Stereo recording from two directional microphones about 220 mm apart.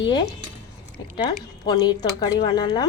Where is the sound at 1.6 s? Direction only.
20° left (ahead or behind).